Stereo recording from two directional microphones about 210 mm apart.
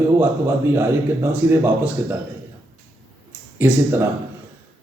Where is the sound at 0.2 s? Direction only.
10° right (ahead or behind).